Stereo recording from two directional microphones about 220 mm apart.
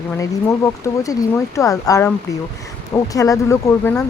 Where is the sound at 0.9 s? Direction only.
15° left (ahead or behind).